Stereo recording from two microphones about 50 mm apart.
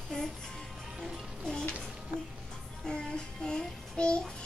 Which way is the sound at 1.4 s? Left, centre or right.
Centre.